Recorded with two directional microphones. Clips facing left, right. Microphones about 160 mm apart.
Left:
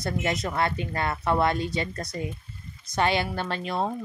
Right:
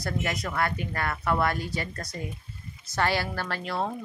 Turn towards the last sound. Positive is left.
turn(degrees=20)  # may be behind; listen again after turning